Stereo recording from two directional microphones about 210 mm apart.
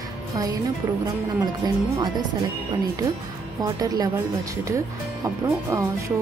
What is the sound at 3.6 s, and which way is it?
Speech, 15° right (ahead or behind).